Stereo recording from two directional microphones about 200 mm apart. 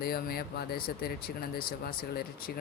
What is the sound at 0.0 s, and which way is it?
Speech, 50° left (ahead or behind).